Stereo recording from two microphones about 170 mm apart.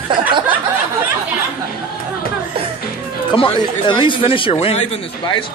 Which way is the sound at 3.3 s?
30° left (ahead or behind).